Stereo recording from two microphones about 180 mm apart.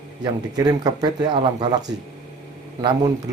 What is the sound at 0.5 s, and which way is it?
Speech, 20° right (ahead or behind).